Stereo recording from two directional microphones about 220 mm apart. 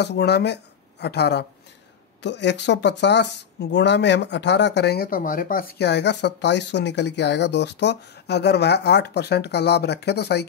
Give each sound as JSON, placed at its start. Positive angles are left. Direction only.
{"t": 0.0, "sound": "speech", "side_deg": 50}